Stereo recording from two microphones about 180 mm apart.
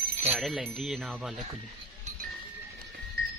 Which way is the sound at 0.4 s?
Centre (ahead or behind).